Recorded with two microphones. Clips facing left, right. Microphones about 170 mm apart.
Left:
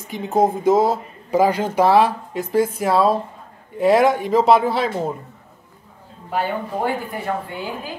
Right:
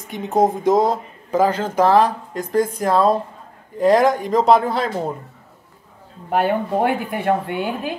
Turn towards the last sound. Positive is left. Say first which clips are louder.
# right 5 dB
turn(degrees=-65)  # may be behind; listen again after turning